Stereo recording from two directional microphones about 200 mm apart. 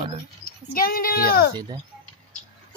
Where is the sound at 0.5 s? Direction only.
50° left (ahead or behind).